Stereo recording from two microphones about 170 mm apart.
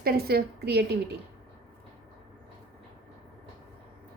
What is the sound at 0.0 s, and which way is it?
Speech, 65° right (ahead or behind).